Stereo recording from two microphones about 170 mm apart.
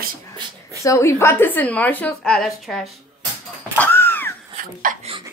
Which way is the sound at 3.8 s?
10° left (ahead or behind).